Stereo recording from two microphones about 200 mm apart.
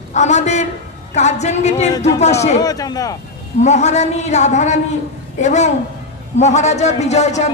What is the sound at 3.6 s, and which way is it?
A man's voice, 35° left (ahead or behind).